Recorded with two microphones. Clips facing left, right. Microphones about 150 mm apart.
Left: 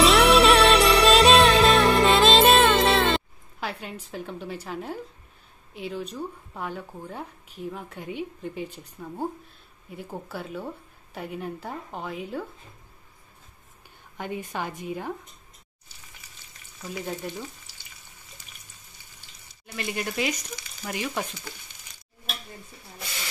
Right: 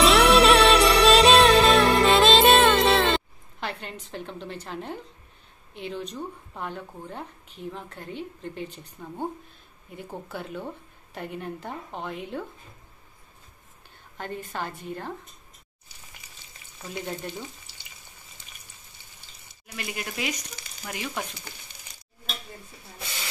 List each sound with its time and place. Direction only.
0.0 s music: centre (ahead or behind)
5.8 s speech: 5° left (ahead or behind)
14.1 s speech: 10° left (ahead or behind)
17.0 s speech: centre (ahead or behind)
19.7 s speech: centre (ahead or behind)